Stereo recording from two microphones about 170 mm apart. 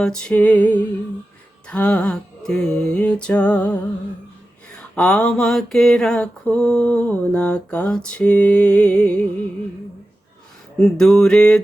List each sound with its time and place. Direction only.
0.0 s mantra: 5° left (ahead or behind)
4.9 s mantra: 5° left (ahead or behind)
10.8 s a sound: centre (ahead or behind)